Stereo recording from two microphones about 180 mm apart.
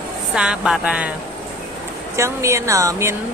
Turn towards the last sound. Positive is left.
turn(degrees=-15)  # may be behind; listen again after turning